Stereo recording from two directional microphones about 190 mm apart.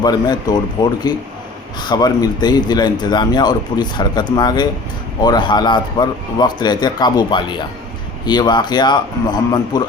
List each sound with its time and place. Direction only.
0.0 s speech: 20° left (ahead or behind)